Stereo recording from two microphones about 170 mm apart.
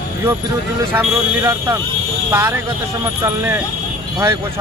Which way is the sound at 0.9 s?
15° right (ahead or behind).